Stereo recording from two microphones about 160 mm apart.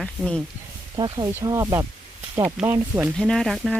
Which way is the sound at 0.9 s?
25° right (ahead or behind).